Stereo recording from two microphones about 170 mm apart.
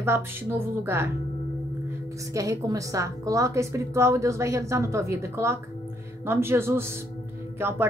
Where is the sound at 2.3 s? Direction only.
20° right (ahead or behind).